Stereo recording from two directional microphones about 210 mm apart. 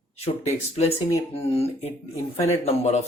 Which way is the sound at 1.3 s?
30° left (ahead or behind).